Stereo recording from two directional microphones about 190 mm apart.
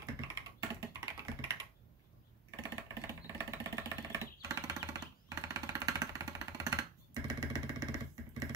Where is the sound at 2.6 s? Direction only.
20° right (ahead or behind).